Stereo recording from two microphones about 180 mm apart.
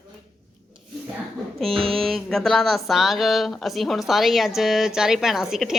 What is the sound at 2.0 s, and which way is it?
Speech, centre (ahead or behind).